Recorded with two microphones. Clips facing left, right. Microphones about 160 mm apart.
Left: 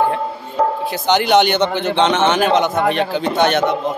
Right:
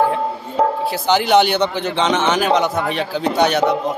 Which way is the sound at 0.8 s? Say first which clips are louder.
Left 1 dB; 5° right (ahead or behind).